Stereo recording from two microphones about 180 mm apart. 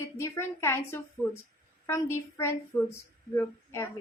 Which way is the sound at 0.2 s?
15° left (ahead or behind).